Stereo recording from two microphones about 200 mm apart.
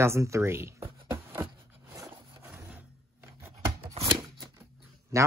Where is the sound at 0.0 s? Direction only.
15° right (ahead or behind).